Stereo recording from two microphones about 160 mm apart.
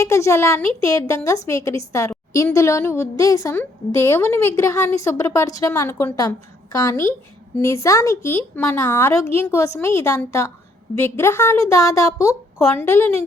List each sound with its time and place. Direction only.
0.0 s a woman's voice: 20° left (ahead or behind)